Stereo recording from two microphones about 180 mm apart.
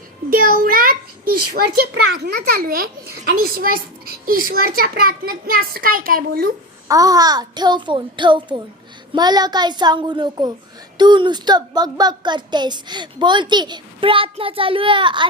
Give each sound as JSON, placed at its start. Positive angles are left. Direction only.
{"t": 0.3, "sound": "a child's voice", "side_deg": -50}
{"t": 6.8, "sound": "a child's voice", "side_deg": -20}